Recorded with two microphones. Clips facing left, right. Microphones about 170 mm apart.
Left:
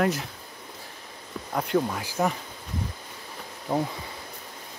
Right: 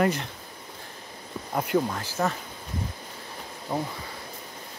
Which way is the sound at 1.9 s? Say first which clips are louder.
Left 1 dB; 10° left (ahead or behind).